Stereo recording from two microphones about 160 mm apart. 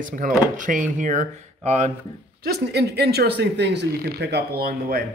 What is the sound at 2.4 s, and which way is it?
Speech, 85° right.